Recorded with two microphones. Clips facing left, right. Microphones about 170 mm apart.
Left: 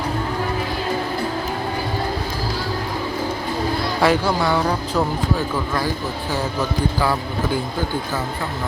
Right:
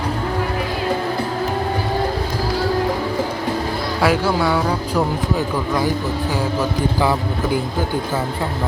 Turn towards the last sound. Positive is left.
turn(degrees=-20)  # may be behind; listen again after turning